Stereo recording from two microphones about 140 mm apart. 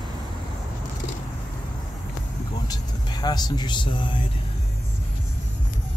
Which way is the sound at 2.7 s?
30° left (ahead or behind).